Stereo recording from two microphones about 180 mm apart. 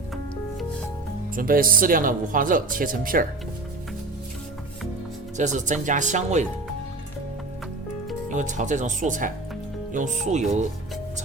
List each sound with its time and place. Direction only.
1.4 s speech: 50° right (ahead or behind)
5.4 s speech: 40° right (ahead or behind)
8.3 s speech: 45° right (ahead or behind)